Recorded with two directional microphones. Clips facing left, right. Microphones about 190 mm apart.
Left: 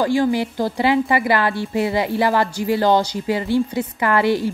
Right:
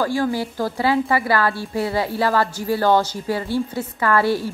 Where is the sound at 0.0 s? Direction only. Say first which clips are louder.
Left 3 dB; 20° left (ahead or behind).